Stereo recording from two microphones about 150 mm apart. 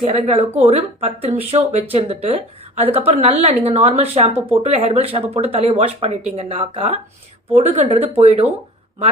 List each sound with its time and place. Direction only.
0.1 s speech: 45° right (ahead or behind)